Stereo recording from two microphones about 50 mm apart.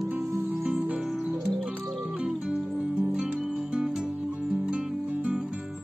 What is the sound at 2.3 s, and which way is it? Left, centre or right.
Music, centre.